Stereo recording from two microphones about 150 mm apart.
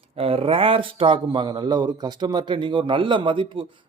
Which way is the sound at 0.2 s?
40° right (ahead or behind).